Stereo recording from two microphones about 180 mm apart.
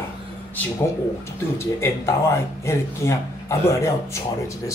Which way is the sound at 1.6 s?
15° left (ahead or behind).